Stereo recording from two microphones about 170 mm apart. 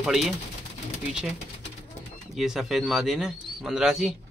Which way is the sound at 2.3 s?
Centre (ahead or behind).